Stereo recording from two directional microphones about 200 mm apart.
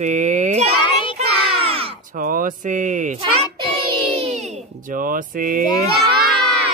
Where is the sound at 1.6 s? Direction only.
30° right (ahead or behind).